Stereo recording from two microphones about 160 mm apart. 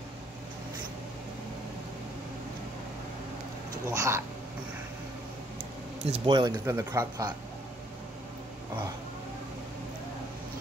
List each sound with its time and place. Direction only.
3.9 s speech: 20° right (ahead or behind)
5.6 s a sound: 40° right (ahead or behind)
6.3 s speech: 25° right (ahead or behind)
6.6 s speech: 15° right (ahead or behind)